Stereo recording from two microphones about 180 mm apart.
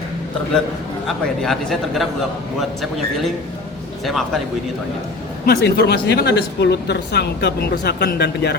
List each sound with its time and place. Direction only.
1.0 s speech: centre (ahead or behind)
5.5 s a woman's voice: 65° left (ahead or behind)